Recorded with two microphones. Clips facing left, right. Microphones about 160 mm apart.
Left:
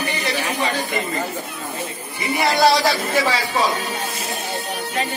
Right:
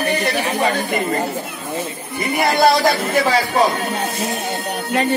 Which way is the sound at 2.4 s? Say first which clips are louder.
Right 2 dB; 55° right (ahead or behind).